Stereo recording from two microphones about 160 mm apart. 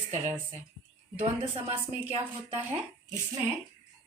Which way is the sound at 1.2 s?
45° right (ahead or behind).